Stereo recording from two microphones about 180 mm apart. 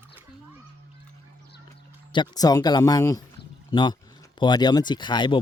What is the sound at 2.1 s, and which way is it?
Speech, 25° left (ahead or behind).